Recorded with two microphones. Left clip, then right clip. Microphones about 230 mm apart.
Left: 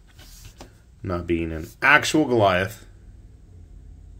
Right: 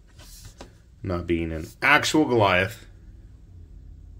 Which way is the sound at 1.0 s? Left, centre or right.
Centre.